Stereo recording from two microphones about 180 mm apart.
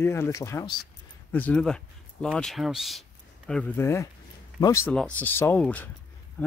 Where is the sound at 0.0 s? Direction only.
15° left (ahead or behind).